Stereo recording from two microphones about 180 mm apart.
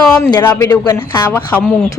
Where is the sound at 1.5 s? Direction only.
10° left (ahead or behind).